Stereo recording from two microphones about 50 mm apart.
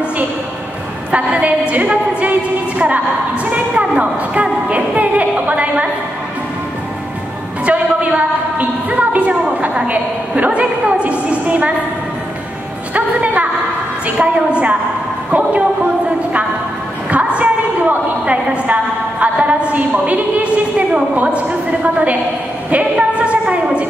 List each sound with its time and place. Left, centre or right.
1.1 s a woman's voice: right
3.4 s a sound: right
7.6 s a sound: right
9.1 s a woman's voice: right
12.9 s a woman's voice: right
17.1 s a woman's voice: right
22.7 s music: right